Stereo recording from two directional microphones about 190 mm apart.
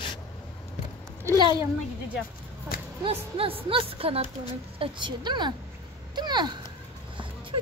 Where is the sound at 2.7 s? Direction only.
10° right (ahead or behind).